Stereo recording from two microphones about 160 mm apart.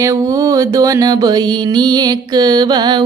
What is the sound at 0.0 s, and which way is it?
Mantra, 20° right (ahead or behind).